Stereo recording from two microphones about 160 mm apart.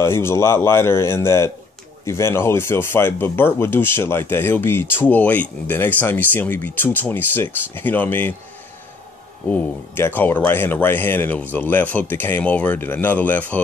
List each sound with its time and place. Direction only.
0.0 s speech: 15° left (ahead or behind)
9.5 s speech: 15° left (ahead or behind)